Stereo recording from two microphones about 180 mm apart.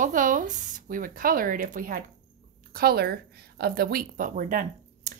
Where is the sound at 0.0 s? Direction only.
45° right (ahead or behind).